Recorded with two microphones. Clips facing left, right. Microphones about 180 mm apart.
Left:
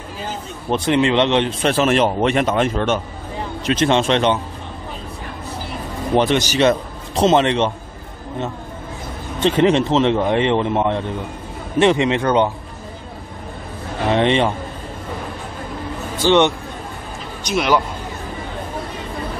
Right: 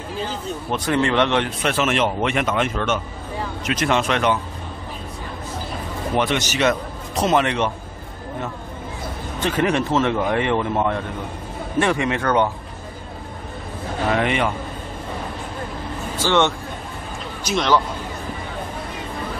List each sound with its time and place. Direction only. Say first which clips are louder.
0.7 s speech: left 4 dB; 25° left (ahead or behind)
1.6 s speech: left 4 dB; 35° left (ahead or behind)
6.1 s speech: left 5 dB; 30° left (ahead or behind)
9.4 s speech: left 5 dB; 25° left (ahead or behind)
14.1 s speech: left 6 dB; 30° left (ahead or behind)
16.2 s speech: left 4 dB; 15° left (ahead or behind)
17.6 s speech: left 2 dB; 10° left (ahead or behind)